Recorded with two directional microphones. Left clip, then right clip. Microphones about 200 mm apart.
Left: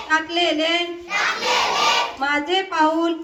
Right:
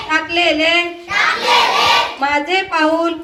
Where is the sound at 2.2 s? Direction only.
50° left (ahead or behind).